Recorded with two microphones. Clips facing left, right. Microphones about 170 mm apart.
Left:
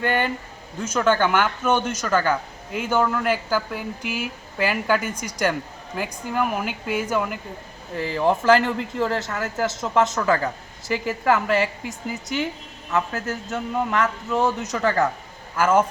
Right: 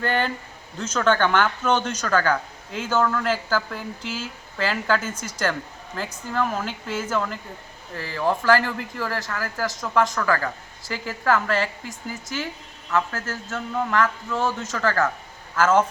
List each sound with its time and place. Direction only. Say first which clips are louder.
0.0 s speech: left 1 dB; 10° left (ahead or behind)